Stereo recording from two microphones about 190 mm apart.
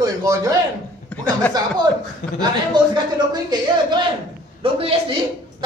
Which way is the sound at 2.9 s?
20° right (ahead or behind).